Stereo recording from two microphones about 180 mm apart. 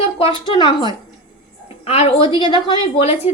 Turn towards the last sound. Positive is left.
turn(degrees=30)  # may be behind; listen again after turning